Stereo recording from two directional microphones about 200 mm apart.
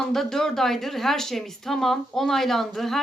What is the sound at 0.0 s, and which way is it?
Speech, centre (ahead or behind).